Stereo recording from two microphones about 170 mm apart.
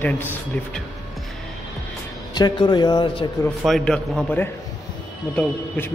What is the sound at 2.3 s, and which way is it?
Speech, 25° left (ahead or behind).